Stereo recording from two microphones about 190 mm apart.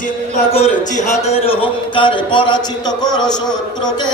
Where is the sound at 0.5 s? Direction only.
30° left (ahead or behind).